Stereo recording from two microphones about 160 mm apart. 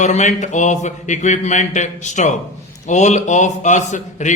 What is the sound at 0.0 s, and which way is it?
Speech, 45° left (ahead or behind).